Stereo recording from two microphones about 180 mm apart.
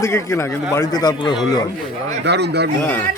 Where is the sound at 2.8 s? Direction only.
10° left (ahead or behind).